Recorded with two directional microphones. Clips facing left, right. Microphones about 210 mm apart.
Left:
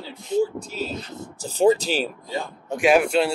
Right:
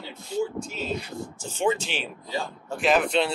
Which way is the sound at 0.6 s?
35° left (ahead or behind).